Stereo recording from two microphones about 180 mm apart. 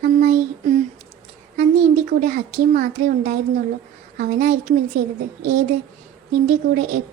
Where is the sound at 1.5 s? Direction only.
50° right (ahead or behind).